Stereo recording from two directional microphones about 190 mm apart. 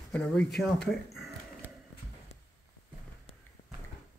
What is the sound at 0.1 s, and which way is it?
Speech, 5° left (ahead or behind).